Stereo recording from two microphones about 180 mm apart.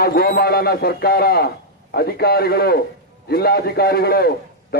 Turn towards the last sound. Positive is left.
turn(degrees=55)  # may be behind; listen again after turning